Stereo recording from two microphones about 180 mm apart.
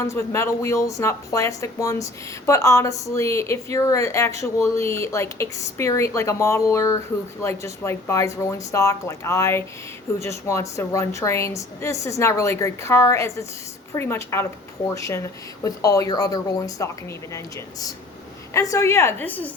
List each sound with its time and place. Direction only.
0.0 s a woman's voice: 15° left (ahead or behind)
18.5 s a woman's voice: 15° left (ahead or behind)